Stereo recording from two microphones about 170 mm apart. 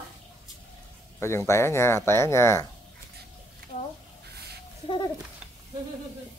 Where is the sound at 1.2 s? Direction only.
15° left (ahead or behind).